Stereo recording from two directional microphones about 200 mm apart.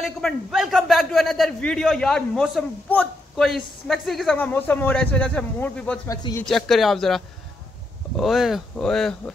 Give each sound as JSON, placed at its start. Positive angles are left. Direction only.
{"t": 0.0, "sound": "a man's voice", "side_deg": 0}
{"t": 6.0, "sound": "speech", "side_deg": 15}
{"t": 6.4, "sound": "a man's voice", "side_deg": 0}